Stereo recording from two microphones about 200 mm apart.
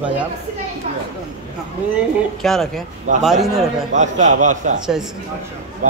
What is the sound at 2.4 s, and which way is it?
Speech, centre (ahead or behind).